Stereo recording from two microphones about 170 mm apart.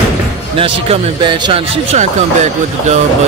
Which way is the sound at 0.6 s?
30° right (ahead or behind).